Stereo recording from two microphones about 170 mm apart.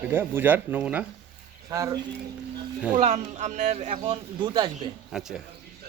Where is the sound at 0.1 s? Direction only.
15° right (ahead or behind).